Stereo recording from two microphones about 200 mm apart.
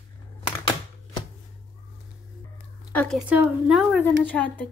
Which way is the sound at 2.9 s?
Centre (ahead or behind).